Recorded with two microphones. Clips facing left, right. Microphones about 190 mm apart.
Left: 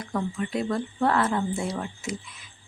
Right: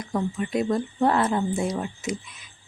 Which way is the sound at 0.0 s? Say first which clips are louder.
Right 2 dB; 15° right (ahead or behind).